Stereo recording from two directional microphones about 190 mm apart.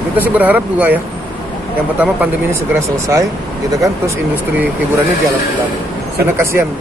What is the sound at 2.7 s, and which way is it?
Speech, 15° right (ahead or behind).